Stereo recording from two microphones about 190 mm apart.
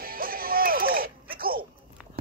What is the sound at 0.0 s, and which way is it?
Music, 50° right (ahead or behind).